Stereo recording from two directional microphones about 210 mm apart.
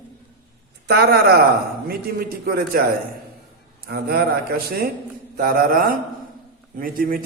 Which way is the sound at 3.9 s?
45° right (ahead or behind).